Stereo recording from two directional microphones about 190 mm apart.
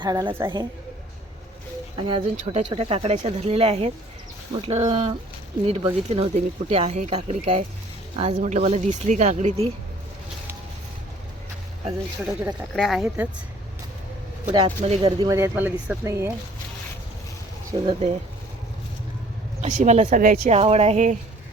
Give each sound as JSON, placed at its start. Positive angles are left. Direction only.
{"t": 0.0, "sound": "a woman's voice", "side_deg": -20}
{"t": 2.0, "sound": "a woman's voice", "side_deg": -25}
{"t": 12.2, "sound": "speech", "side_deg": 0}
{"t": 14.8, "sound": "speech", "side_deg": -30}
{"t": 15.3, "sound": "speech", "side_deg": -10}
{"t": 17.7, "sound": "a woman's voice", "side_deg": -25}
{"t": 19.6, "sound": "speech", "side_deg": -40}